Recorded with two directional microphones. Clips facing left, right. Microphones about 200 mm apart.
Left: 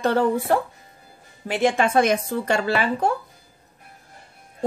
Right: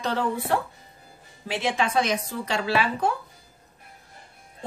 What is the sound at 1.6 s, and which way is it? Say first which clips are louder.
A woman's voice: left 6 dB; 50° left (ahead or behind).